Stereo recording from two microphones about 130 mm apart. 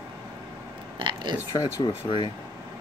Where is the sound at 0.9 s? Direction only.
40° right (ahead or behind).